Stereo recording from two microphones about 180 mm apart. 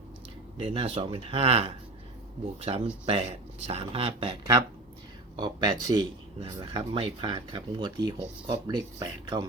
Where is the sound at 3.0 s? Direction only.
35° right (ahead or behind).